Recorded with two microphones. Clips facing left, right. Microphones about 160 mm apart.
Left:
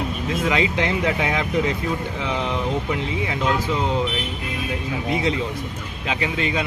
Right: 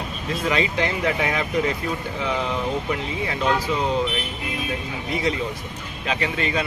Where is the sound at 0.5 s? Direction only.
20° left (ahead or behind).